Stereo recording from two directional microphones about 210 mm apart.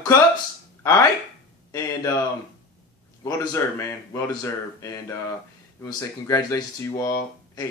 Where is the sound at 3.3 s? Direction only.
15° left (ahead or behind).